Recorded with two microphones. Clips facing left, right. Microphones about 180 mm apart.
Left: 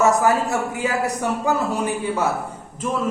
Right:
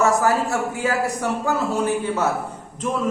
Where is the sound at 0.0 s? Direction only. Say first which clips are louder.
Left 1 dB; 20° left (ahead or behind).